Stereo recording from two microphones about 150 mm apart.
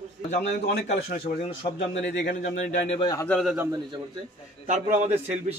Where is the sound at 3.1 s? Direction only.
10° left (ahead or behind).